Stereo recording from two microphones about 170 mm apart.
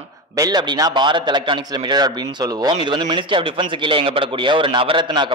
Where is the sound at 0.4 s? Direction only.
20° right (ahead or behind).